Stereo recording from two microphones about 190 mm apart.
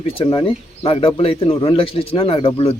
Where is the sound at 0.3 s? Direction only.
25° left (ahead or behind).